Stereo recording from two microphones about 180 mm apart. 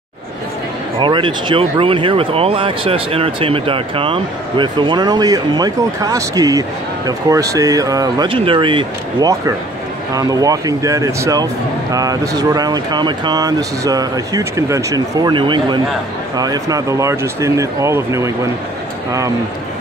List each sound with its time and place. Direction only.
0.9 s speech: 25° right (ahead or behind)